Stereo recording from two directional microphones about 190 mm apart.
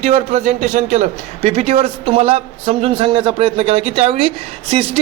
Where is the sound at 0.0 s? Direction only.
35° right (ahead or behind).